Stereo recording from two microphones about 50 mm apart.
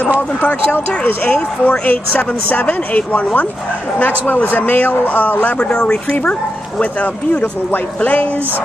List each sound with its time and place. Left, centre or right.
0.4 s speech: left
0.7 s speech: left
2.6 s speech: left